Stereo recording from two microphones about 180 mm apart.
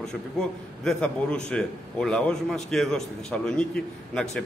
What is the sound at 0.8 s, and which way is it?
A man's voice, 5° left (ahead or behind).